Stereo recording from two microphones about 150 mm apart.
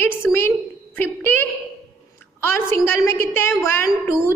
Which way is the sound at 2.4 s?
15° left (ahead or behind).